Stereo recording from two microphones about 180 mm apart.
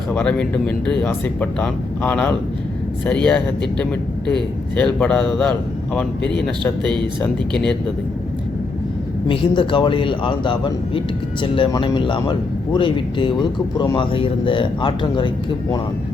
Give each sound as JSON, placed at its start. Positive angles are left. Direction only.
{"t": 0.1, "sound": "speech", "side_deg": 5}
{"t": 9.2, "sound": "speech", "side_deg": 25}